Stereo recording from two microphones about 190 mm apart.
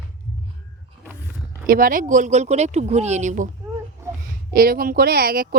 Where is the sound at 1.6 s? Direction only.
50° right (ahead or behind).